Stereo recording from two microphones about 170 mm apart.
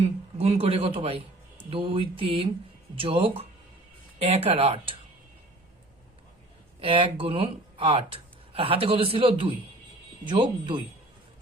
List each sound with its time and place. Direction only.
0.0 s speech: 35° right (ahead or behind)
6.8 s speech: 30° right (ahead or behind)